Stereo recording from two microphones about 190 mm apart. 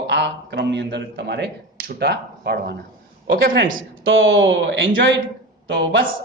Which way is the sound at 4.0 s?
90° right.